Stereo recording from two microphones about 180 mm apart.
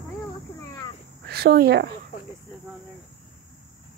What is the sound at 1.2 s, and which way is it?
Speech, 60° right (ahead or behind).